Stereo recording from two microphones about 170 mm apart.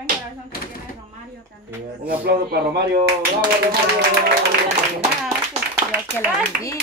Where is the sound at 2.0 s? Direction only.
65° right (ahead or behind).